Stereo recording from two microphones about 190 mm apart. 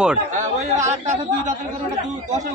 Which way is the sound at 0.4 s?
35° right (ahead or behind).